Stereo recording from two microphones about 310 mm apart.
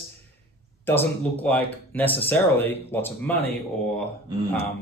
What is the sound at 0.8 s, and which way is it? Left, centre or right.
A man's voice, centre.